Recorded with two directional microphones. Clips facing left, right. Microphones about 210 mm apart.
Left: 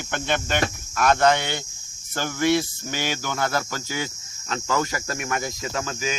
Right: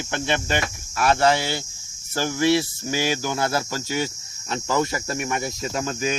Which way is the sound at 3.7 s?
25° right (ahead or behind).